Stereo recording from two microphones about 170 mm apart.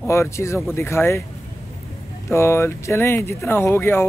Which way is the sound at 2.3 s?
15° left (ahead or behind).